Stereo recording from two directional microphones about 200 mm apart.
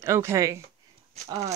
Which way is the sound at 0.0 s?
15° right (ahead or behind).